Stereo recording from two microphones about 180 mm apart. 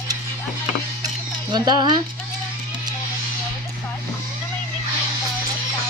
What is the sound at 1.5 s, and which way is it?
Speech, 25° right (ahead or behind).